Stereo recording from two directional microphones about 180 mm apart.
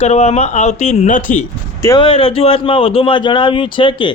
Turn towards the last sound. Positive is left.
turn(degrees=25)  # may be behind; listen again after turning